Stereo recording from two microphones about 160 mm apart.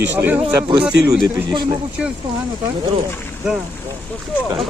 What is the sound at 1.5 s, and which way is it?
Speech, 30° right (ahead or behind).